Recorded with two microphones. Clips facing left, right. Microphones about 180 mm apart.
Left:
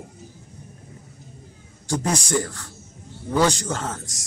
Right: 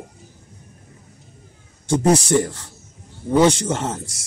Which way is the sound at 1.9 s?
30° right (ahead or behind).